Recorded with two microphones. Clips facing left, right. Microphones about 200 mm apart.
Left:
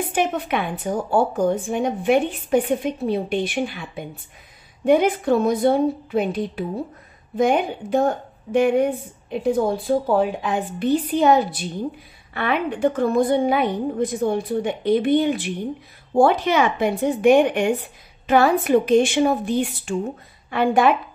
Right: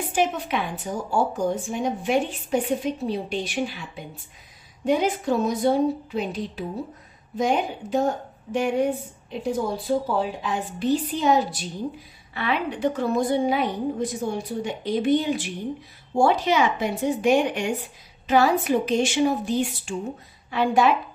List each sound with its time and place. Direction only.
0.1 s a woman's voice: 60° left (ahead or behind)